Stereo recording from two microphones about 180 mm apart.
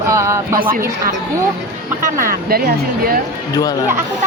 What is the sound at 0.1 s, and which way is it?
Music, 15° right (ahead or behind).